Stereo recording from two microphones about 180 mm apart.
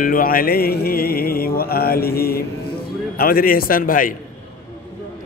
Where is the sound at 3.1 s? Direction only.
55° left (ahead or behind).